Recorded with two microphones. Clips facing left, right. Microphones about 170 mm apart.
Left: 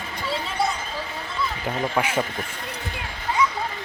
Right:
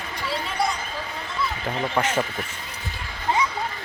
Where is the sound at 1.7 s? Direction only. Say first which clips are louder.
Even; 5° left (ahead or behind).